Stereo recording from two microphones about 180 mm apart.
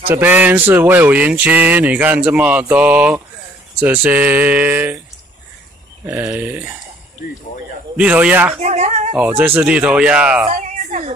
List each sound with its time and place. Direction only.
0.1 s speech: 10° right (ahead or behind)
6.0 s speech: 15° right (ahead or behind)
7.2 s speech: 55° left (ahead or behind)
8.0 s speech: 5° right (ahead or behind)
8.5 s a sound: 40° right (ahead or behind)
9.4 s speech: 10° right (ahead or behind)
10.5 s a sound: 40° right (ahead or behind)